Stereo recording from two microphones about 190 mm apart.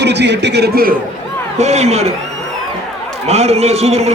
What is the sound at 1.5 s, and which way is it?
Speech, 35° right (ahead or behind).